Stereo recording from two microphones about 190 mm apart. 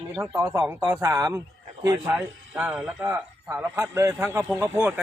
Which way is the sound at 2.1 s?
5° right (ahead or behind).